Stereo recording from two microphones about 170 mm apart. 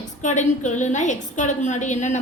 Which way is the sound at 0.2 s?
45° left (ahead or behind).